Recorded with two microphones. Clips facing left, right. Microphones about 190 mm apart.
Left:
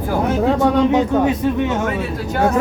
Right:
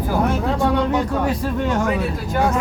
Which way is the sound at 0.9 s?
20° left (ahead or behind).